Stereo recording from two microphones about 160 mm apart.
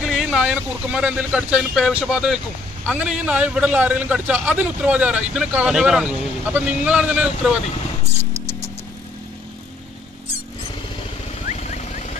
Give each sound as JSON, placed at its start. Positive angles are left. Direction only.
{"t": 0.0, "sound": "speech", "side_deg": 0}
{"t": 11.4, "sound": "vehicle", "side_deg": 45}